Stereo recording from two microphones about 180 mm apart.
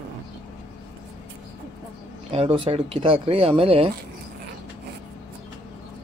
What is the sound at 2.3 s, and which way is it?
Speech, 30° right (ahead or behind).